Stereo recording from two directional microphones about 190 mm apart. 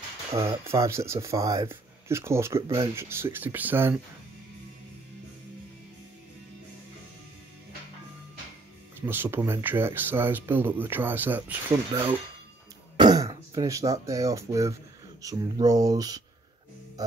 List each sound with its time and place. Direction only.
0.7 s speech: 15° right (ahead or behind)
9.0 s speech: 10° right (ahead or behind)
12.9 s speech: 20° right (ahead or behind)